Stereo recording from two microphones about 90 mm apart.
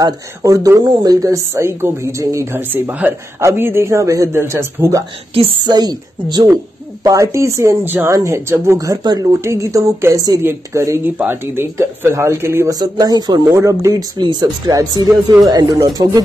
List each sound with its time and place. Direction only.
0.0 s speech: 40° right (ahead or behind)
1.5 s speech: 30° right (ahead or behind)
5.3 s a woman's voice: 90° right
5.7 s speech: 50° right (ahead or behind)
6.4 s speech: 40° right (ahead or behind)
7.8 s speech: 20° right (ahead or behind)
8.1 s speech: 30° right (ahead or behind)
9.4 s speech: 35° right (ahead or behind)
12.6 s speech: 45° right (ahead or behind)
13.5 s speech: 35° right (ahead or behind); by 14.5 s 55° right (ahead or behind)
14.7 s speech: 40° right (ahead or behind)